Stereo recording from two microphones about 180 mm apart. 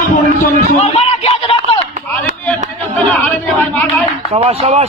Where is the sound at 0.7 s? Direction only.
35° left (ahead or behind).